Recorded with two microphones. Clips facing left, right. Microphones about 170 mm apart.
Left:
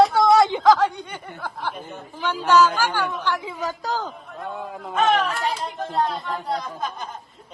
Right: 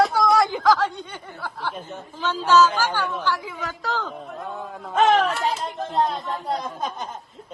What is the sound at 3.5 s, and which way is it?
Speech, 40° left (ahead or behind).